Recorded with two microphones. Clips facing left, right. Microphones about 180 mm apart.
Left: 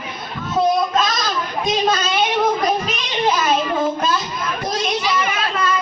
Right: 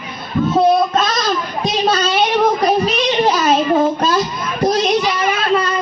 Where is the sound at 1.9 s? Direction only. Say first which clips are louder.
Right 4 dB; 35° right (ahead or behind).